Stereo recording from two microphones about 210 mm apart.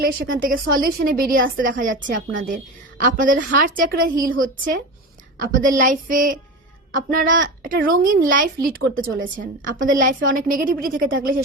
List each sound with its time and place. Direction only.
0.0 s a woman's voice: 45° right (ahead or behind)